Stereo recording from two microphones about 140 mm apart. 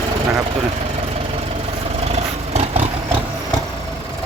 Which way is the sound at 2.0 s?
50° right (ahead or behind).